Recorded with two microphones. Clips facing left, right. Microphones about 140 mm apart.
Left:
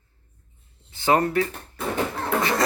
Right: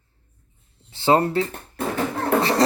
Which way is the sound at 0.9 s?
30° right (ahead or behind).